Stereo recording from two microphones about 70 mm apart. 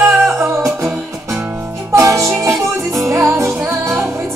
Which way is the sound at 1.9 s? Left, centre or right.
Right.